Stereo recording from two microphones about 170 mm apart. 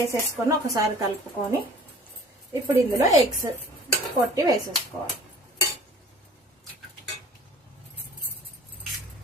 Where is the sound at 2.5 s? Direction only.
20° right (ahead or behind).